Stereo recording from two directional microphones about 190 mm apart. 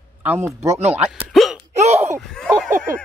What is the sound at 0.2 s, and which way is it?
Speech, 10° right (ahead or behind).